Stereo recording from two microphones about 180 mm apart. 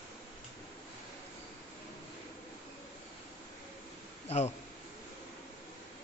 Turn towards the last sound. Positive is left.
turn(degrees=35)  # may be behind; listen again after turning